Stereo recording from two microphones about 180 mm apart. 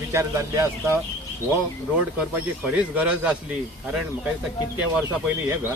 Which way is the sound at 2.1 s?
5° right (ahead or behind).